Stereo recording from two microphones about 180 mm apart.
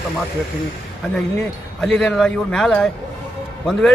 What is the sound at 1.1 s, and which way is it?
A man's voice, 5° left (ahead or behind).